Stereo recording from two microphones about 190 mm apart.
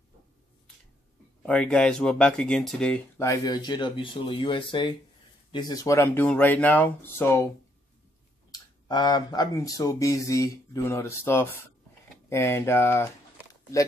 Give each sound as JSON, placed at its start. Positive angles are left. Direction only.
{"t": 1.4, "sound": "speech", "side_deg": 5}
{"t": 8.5, "sound": "speech", "side_deg": 20}